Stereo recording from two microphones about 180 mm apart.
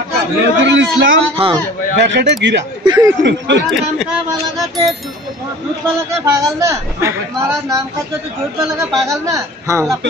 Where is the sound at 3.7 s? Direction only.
Centre (ahead or behind).